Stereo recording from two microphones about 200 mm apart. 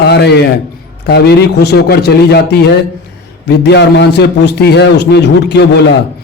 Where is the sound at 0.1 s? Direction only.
55° left (ahead or behind).